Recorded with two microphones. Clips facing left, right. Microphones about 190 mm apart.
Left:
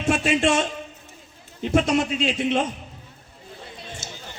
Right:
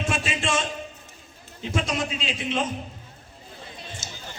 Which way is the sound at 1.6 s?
60° left (ahead or behind).